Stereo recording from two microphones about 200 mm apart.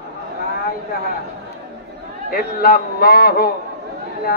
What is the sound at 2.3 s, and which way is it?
Speech, 50° left (ahead or behind).